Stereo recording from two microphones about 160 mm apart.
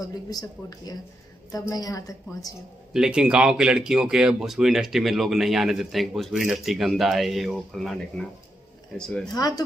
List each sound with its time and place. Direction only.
0.0 s a woman's voice: 25° left (ahead or behind)
2.9 s speech: 5° right (ahead or behind)
9.3 s a woman's voice: 25° left (ahead or behind)